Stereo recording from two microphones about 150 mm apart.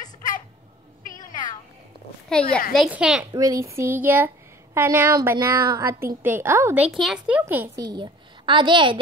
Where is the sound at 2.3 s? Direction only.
5° left (ahead or behind).